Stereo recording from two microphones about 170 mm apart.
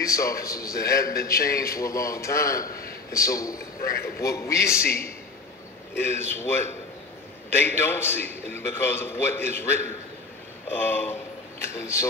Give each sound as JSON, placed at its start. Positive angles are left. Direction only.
{"t": 0.0, "sound": "speech", "side_deg": 20}
{"t": 1.0, "sound": "a man's voice", "side_deg": 60}
{"t": 1.8, "sound": "a man's voice", "side_deg": 20}